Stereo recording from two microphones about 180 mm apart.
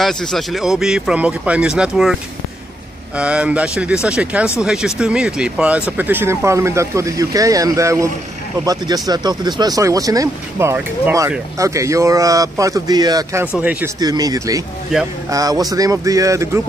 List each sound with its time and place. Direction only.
0.0 s speech: centre (ahead or behind)
3.2 s speech: 5° right (ahead or behind)
13.9 s speech: 20° right (ahead or behind)